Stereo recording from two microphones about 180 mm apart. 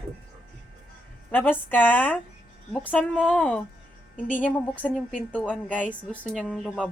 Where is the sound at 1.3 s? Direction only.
10° left (ahead or behind).